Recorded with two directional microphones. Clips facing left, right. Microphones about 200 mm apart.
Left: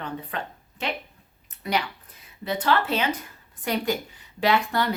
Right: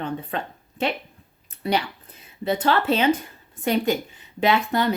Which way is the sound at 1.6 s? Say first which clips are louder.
Right 3 dB; 30° right (ahead or behind).